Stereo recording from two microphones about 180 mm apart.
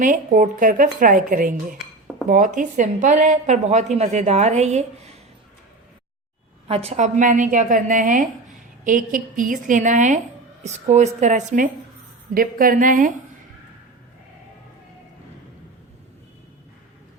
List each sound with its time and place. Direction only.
0.0 s a woman's voice: 45° right (ahead or behind)
6.7 s a woman's voice: 35° right (ahead or behind)